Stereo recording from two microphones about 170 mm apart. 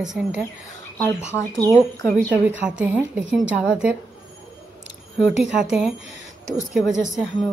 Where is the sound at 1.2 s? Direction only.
15° left (ahead or behind).